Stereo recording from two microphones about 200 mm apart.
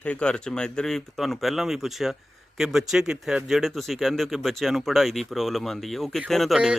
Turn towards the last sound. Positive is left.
turn(degrees=0)  # may be behind; listen again after turning